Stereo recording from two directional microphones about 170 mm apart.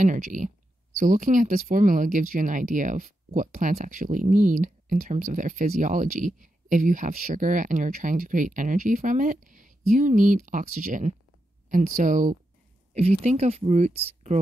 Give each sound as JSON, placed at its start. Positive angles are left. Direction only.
{"t": 0.0, "sound": "speech", "side_deg": -50}
{"t": 12.9, "sound": "speech", "side_deg": -40}